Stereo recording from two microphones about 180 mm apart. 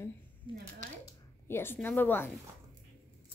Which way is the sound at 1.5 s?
10° left (ahead or behind).